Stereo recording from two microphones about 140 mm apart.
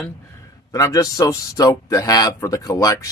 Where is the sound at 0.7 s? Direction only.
25° left (ahead or behind).